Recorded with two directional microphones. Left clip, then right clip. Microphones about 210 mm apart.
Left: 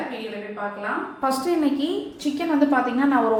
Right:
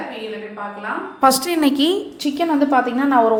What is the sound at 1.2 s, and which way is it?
Speech, 50° right (ahead or behind).